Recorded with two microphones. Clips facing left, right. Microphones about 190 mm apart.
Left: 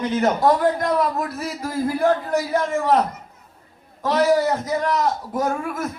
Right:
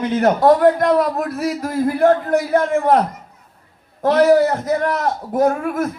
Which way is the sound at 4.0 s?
55° right (ahead or behind).